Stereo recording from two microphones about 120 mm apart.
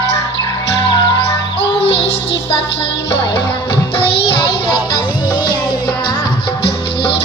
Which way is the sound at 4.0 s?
50° left (ahead or behind).